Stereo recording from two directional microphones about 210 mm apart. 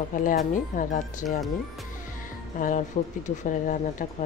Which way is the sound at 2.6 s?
40° left (ahead or behind).